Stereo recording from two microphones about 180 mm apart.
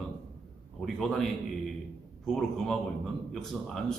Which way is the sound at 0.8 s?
Centre (ahead or behind).